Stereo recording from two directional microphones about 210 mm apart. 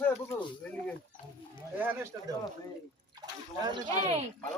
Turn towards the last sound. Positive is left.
turn(degrees=-35)  # may be behind; listen again after turning